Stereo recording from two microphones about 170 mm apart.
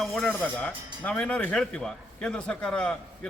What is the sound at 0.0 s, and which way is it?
A man's voice, 5° left (ahead or behind).